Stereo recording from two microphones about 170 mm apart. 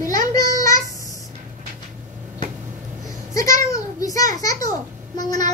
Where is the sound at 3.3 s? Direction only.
20° left (ahead or behind).